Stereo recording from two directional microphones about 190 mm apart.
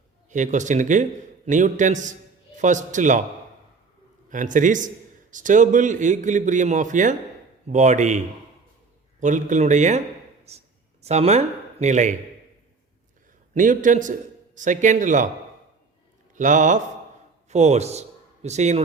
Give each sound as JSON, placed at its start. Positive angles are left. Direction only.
{"t": 0.3, "sound": "a man's voice", "side_deg": -40}
{"t": 4.3, "sound": "a man's voice", "side_deg": -40}
{"t": 9.2, "sound": "a man's voice", "side_deg": -40}
{"t": 13.5, "sound": "a man's voice", "side_deg": -45}
{"t": 16.3, "sound": "a man's voice", "side_deg": -40}